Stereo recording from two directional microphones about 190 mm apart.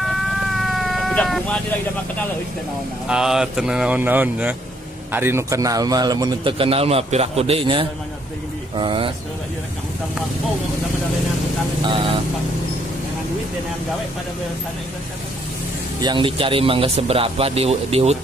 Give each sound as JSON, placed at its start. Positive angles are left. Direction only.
{"t": 0.0, "sound": "vehicle", "side_deg": 0}
{"t": 3.1, "sound": "speech", "side_deg": -5}
{"t": 16.0, "sound": "speech", "side_deg": -25}